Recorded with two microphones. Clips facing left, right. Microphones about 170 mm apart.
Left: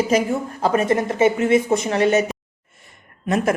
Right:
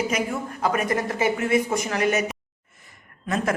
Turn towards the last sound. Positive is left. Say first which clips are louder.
# left 5 dB
turn(degrees=25)  # may be behind; listen again after turning